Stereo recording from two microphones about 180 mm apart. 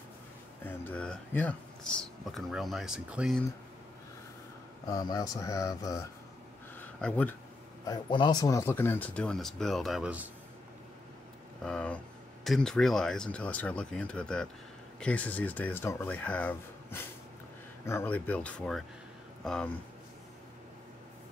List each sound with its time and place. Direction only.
0.7 s speech: 10° left (ahead or behind)
4.8 s speech: 20° left (ahead or behind)
6.8 s a sound: 5° left (ahead or behind)
7.8 s speech: 25° left (ahead or behind); by 10.3 s 5° right (ahead or behind)
11.6 s speech: 5° left (ahead or behind)